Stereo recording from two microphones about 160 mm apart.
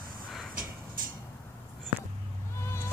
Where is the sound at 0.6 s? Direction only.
60° right (ahead or behind).